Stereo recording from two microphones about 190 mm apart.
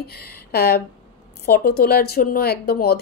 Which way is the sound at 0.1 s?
55° left (ahead or behind).